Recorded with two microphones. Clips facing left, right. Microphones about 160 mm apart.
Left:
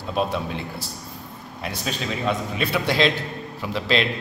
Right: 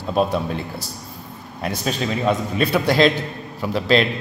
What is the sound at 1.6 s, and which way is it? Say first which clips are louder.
A man's voice: right 5 dB; 45° right (ahead or behind).